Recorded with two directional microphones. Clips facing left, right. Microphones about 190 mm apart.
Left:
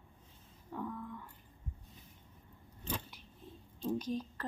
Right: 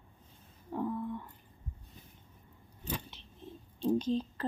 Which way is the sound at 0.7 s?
30° right (ahead or behind).